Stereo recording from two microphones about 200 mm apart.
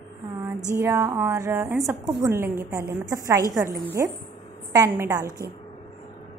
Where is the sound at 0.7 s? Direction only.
15° right (ahead or behind).